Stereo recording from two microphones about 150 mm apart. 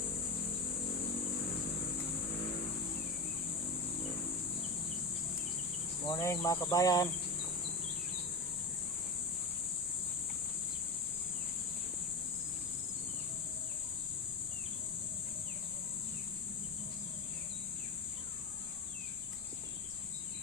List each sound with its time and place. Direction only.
6.1 s speech: 20° left (ahead or behind)